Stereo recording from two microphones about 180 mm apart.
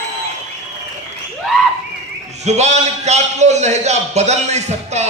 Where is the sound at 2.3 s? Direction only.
40° right (ahead or behind).